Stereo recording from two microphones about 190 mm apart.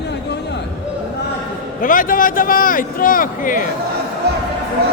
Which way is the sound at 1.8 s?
45° left (ahead or behind).